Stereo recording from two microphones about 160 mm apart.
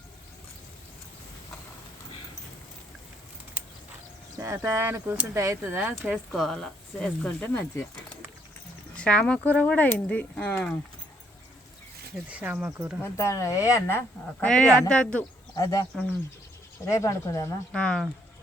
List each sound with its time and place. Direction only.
4.4 s speech: 15° right (ahead or behind)
6.1 s speech: centre (ahead or behind)
9.0 s speech: 5° left (ahead or behind)
12.3 s speech: 10° right (ahead or behind)
13.0 s speech: 15° left (ahead or behind)
14.4 s speech: 5° left (ahead or behind)
15.5 s speech: 20° left (ahead or behind)
17.7 s speech: 5° left (ahead or behind)